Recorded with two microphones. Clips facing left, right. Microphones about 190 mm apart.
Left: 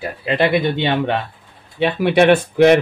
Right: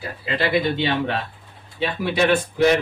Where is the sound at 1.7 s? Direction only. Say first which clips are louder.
Left 8 dB; 65° left (ahead or behind).